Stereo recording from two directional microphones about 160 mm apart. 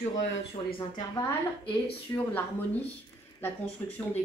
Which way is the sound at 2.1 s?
20° left (ahead or behind).